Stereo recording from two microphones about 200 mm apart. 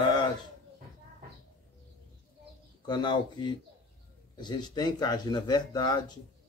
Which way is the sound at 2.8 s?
20° left (ahead or behind).